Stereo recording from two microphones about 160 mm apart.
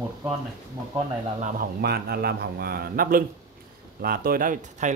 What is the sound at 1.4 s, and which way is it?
A man's voice, 75° right (ahead or behind).